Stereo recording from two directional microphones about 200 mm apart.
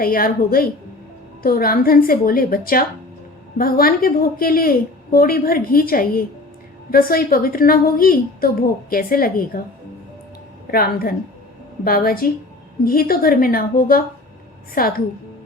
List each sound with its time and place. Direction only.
0.0 s a woman's voice: 45° left (ahead or behind)
10.7 s a woman's voice: 50° left (ahead or behind)